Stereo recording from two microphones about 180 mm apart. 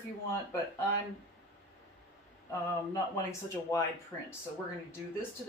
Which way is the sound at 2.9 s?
15° left (ahead or behind).